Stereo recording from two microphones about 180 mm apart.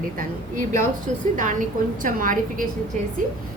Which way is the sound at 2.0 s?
50° right (ahead or behind).